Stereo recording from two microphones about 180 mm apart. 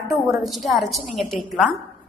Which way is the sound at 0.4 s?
Centre (ahead or behind).